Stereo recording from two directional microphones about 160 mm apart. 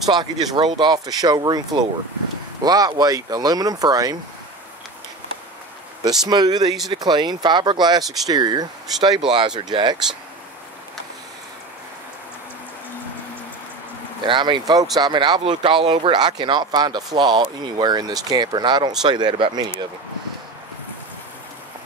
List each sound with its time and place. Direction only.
0.1 s speech: 25° right (ahead or behind)
6.0 s speech: 25° right (ahead or behind)
14.2 s speech: 30° right (ahead or behind)